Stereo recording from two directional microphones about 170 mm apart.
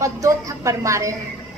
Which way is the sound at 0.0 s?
20° right (ahead or behind).